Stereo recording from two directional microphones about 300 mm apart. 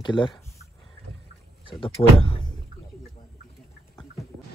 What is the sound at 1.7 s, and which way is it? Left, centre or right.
Speech, centre.